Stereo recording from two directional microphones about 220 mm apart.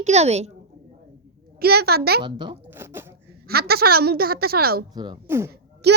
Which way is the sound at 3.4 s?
45° right (ahead or behind).